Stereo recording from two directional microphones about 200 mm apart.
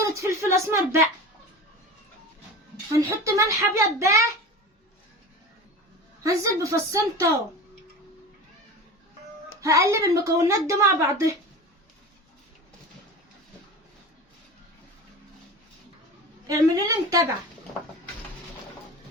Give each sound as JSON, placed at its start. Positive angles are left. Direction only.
{"t": 0.0, "sound": "a woman's voice", "side_deg": -15}
{"t": 2.9, "sound": "a woman's voice", "side_deg": -15}
{"t": 6.2, "sound": "a woman's voice", "side_deg": -15}
{"t": 9.6, "sound": "a woman's voice", "side_deg": -15}
{"t": 16.5, "sound": "a woman's voice", "side_deg": -15}